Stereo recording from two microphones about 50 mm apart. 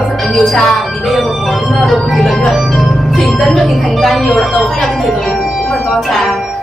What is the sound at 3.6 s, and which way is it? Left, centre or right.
A woman's voice, centre.